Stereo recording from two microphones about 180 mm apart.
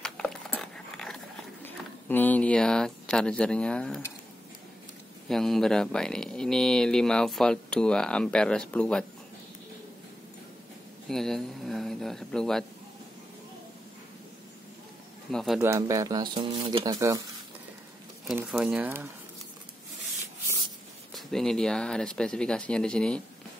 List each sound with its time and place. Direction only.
0.0 s dog: 5° left (ahead or behind)
1.6 s speech: 10° left (ahead or behind)
5.3 s speech: centre (ahead or behind)
11.1 s speech: centre (ahead or behind)
15.3 s speech: centre (ahead or behind)
15.6 s speech: 15° right (ahead or behind)
18.2 s speech: 5° right (ahead or behind)
21.1 s speech: centre (ahead or behind)